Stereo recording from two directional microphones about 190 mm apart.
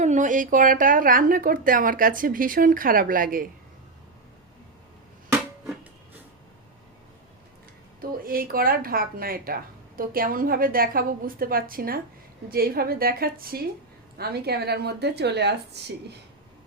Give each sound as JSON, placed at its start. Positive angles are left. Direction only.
{"t": 0.0, "sound": "a woman's voice", "side_deg": -40}
{"t": 8.2, "sound": "a woman's voice", "side_deg": -50}